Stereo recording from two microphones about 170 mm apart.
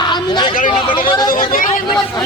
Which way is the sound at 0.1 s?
25° left (ahead or behind).